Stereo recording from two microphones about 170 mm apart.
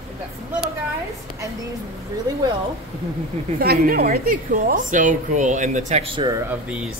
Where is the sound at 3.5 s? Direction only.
60° right (ahead or behind); by 6.3 s 30° right (ahead or behind).